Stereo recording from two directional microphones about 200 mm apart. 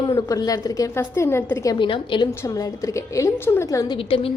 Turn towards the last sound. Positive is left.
turn(degrees=30)  # may be behind; listen again after turning